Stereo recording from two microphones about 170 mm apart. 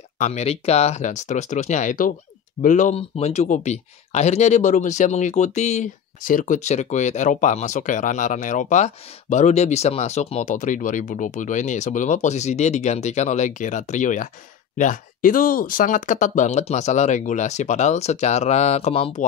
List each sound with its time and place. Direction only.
0.2 s speech: 40° left (ahead or behind)